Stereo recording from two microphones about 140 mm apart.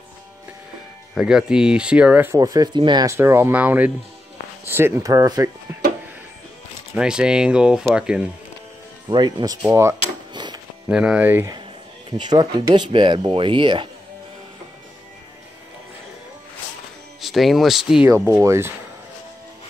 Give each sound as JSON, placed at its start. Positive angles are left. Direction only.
{"t": 1.1, "sound": "speech", "side_deg": -5}
{"t": 2.3, "sound": "speech", "side_deg": -25}
{"t": 7.0, "sound": "speech", "side_deg": -5}
{"t": 9.1, "sound": "speech", "side_deg": -30}
{"t": 10.3, "sound": "music", "side_deg": -30}
{"t": 10.9, "sound": "speech", "side_deg": -5}
{"t": 12.1, "sound": "speech", "side_deg": -30}
{"t": 17.2, "sound": "speech", "side_deg": 0}
{"t": 18.3, "sound": "speech", "side_deg": -20}